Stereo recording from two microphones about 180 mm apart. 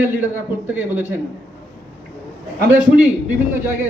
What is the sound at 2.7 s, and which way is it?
Speech, 10° right (ahead or behind).